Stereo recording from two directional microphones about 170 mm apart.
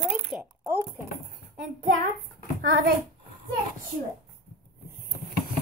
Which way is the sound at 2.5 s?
65° right (ahead or behind).